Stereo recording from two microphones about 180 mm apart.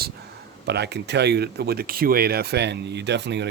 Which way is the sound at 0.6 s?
65° right (ahead or behind).